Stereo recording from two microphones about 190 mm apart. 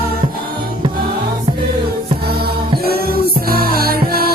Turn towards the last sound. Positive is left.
turn(degrees=-50)  # may be behind; listen again after turning